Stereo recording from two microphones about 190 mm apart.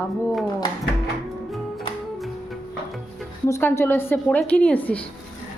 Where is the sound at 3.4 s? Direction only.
15° left (ahead or behind).